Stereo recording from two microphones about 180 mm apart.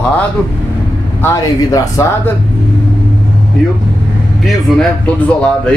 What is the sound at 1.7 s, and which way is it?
Speech, 20° left (ahead or behind).